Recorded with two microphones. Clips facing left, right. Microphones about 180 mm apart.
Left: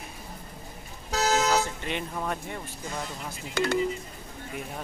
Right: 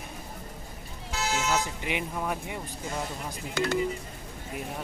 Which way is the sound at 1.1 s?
40° left (ahead or behind).